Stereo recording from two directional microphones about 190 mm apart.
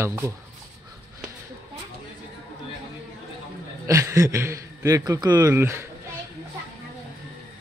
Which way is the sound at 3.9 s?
15° right (ahead or behind).